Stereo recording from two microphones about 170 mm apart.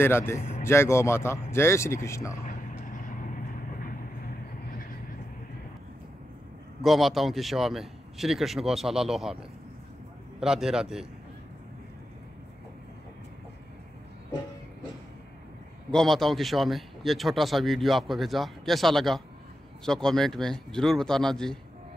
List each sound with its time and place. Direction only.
0.0 s speech: 15° left (ahead or behind)
0.4 s vehicle: 40° left (ahead or behind)
0.7 s speech: 15° left (ahead or behind)
6.8 s speech: centre (ahead or behind)
10.4 s speech: 5° right (ahead or behind)
15.9 s speech: centre (ahead or behind)